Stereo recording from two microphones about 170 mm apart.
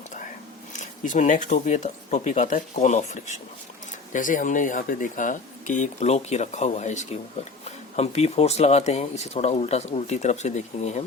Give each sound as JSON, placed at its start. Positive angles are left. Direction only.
{"t": 0.7, "sound": "speech", "side_deg": 45}